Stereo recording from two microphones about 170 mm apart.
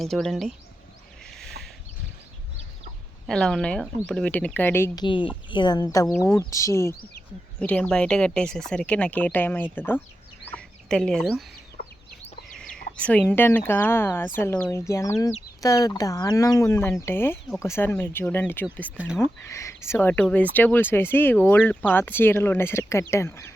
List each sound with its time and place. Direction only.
0.0 s speech: centre (ahead or behind)
1.2 s a sound: centre (ahead or behind)
3.2 s speech: 5° left (ahead or behind)
5.0 s speech: 30° left (ahead or behind)
6.1 s speech: 5° left (ahead or behind)
6.5 s speech: 20° left (ahead or behind)
7.6 s speech: 5° left (ahead or behind)
10.4 s chicken: 5° left (ahead or behind)
13.0 s speech: 10° left (ahead or behind)
18.9 s speech: 5° right (ahead or behind)
19.2 s speech: 15° left (ahead or behind)